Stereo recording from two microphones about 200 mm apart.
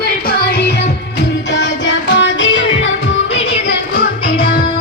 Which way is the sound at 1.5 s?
65° left (ahead or behind).